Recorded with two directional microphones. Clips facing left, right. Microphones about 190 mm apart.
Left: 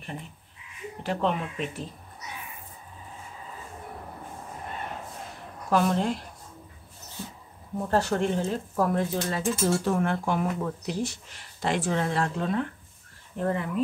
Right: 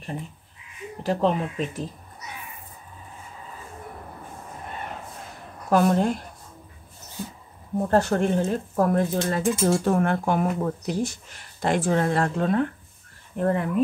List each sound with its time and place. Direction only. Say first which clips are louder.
1.0 s speech: right 5 dB; 35° right (ahead or behind)
5.7 s speech: right 4 dB; 45° right (ahead or behind)
7.9 s speech: right 3 dB; 50° right (ahead or behind)